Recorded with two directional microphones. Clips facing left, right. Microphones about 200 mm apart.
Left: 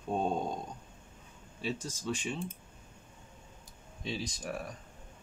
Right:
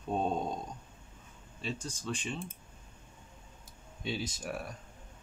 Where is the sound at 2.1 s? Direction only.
10° left (ahead or behind).